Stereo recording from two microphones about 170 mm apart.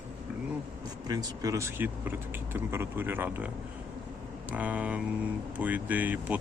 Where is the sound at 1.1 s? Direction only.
20° right (ahead or behind).